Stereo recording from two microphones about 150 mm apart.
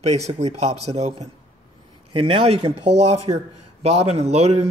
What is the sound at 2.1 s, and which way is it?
Speech, 35° right (ahead or behind).